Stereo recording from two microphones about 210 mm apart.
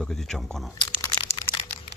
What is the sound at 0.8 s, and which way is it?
Crumpling, 20° left (ahead or behind).